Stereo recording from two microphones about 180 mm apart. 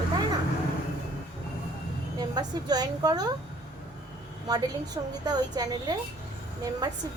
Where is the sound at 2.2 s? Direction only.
20° right (ahead or behind).